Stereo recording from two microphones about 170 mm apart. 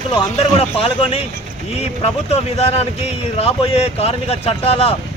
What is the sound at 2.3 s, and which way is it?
Speech, 35° left (ahead or behind).